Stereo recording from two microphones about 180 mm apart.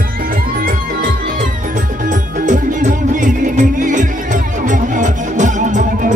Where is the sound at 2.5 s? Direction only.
45° right (ahead or behind).